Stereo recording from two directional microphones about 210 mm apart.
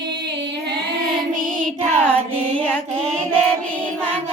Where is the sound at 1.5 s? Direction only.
5° left (ahead or behind).